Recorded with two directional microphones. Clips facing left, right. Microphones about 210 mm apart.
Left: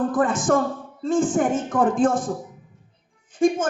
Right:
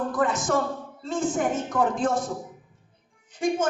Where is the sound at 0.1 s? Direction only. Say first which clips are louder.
Left 4 dB; 50° left (ahead or behind).